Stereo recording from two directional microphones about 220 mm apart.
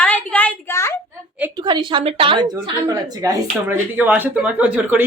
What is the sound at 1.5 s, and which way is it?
A woman's voice, 20° right (ahead or behind).